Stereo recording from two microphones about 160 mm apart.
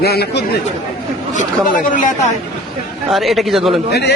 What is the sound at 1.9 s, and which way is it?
Speech, 55° left (ahead or behind).